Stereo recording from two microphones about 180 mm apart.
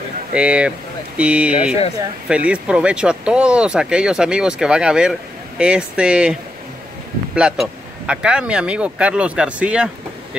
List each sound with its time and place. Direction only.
0.3 s speech: 5° right (ahead or behind)
7.3 s speech: 5° right (ahead or behind)